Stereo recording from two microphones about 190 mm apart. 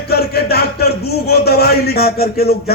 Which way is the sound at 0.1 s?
55° left (ahead or behind).